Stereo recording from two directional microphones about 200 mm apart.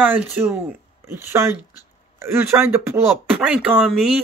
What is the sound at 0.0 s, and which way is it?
Speech, 10° right (ahead or behind).